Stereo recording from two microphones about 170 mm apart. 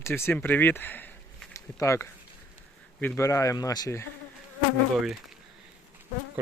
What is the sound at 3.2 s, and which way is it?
Speech, 15° left (ahead or behind).